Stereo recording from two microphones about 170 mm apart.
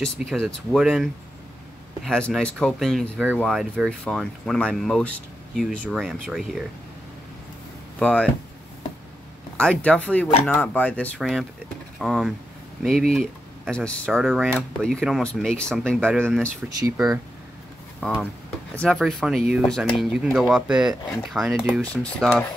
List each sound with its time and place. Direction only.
0.0 s speech: 5° left (ahead or behind)
8.0 s speech: 5° left (ahead or behind)
9.6 s speech: 5° left (ahead or behind)
16.6 s speech: 20° right (ahead or behind)
18.8 s speech: centre (ahead or behind)